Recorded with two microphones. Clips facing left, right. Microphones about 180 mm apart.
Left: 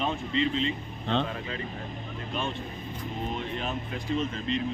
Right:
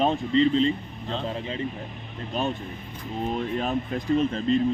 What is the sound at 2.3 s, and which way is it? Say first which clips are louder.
Speech: right 6 dB; 40° right (ahead or behind).